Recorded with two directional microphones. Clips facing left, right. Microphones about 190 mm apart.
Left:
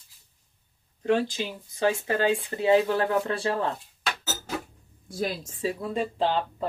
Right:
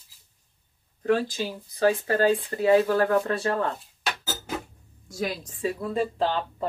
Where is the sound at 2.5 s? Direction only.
20° left (ahead or behind).